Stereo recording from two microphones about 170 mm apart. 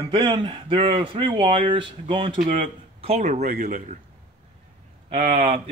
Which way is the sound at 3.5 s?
55° right (ahead or behind).